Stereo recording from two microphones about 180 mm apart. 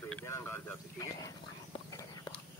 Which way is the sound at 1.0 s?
20° left (ahead or behind).